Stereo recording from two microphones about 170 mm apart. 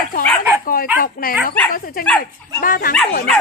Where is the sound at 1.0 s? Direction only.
60° left (ahead or behind).